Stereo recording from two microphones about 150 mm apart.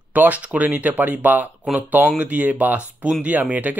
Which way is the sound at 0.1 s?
10° right (ahead or behind).